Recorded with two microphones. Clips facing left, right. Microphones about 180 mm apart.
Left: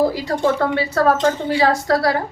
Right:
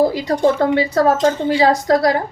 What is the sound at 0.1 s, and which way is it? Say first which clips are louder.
A woman's voice: right 3 dB; 20° right (ahead or behind).